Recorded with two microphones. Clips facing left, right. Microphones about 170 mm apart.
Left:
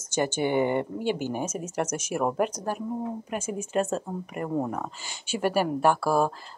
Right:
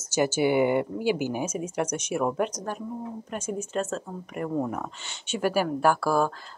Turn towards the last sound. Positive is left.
turn(degrees=5)  # may be behind; listen again after turning